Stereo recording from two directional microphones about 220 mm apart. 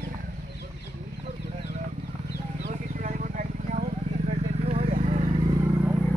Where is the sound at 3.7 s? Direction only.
35° right (ahead or behind).